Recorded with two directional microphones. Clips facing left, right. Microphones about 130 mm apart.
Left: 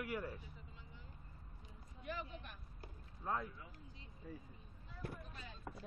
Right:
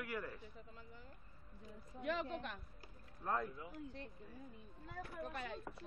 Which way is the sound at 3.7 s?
65° right (ahead or behind).